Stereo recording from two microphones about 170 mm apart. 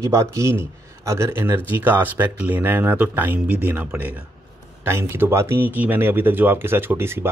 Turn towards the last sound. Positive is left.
turn(degrees=-15)  # may be behind; listen again after turning